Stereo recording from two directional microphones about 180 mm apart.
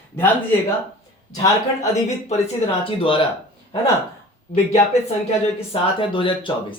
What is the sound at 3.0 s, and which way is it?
Speech, 30° left (ahead or behind).